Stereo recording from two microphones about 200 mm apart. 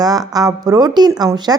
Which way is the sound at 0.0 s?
20° right (ahead or behind).